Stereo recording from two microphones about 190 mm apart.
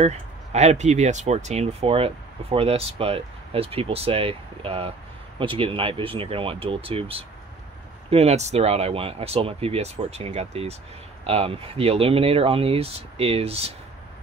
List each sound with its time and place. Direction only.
0.0 s speech: 35° right (ahead or behind)